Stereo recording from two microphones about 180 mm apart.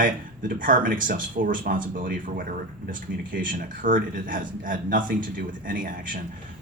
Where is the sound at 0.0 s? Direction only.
50° right (ahead or behind).